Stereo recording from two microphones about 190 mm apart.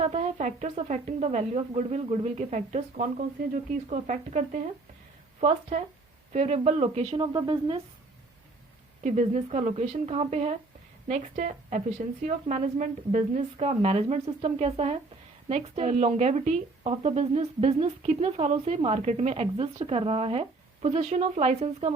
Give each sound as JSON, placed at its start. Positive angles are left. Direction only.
{"t": 0.0, "sound": "a woman's voice", "side_deg": -35}
{"t": 7.3, "sound": "a woman's voice", "side_deg": -25}
{"t": 9.0, "sound": "a woman's voice", "side_deg": -35}